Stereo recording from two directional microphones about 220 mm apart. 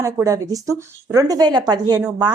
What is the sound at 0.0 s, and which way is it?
Speech, 15° right (ahead or behind).